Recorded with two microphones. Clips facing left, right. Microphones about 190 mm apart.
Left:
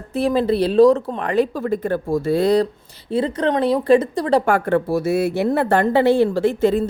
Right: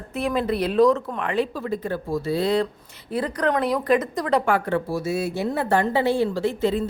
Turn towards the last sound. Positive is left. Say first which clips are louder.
# left 5 dB
turn(degrees=50)  # may be behind; listen again after turning